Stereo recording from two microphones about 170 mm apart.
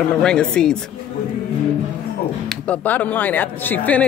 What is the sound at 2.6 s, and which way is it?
Speech, 10° left (ahead or behind).